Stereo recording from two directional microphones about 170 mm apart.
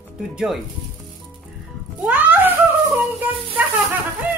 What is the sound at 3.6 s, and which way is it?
Speech, 10° right (ahead or behind).